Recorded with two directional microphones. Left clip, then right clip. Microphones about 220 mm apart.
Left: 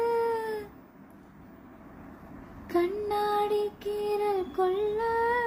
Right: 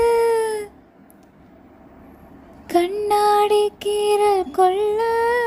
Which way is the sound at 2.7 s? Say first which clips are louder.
Right 10 dB; 40° right (ahead or behind).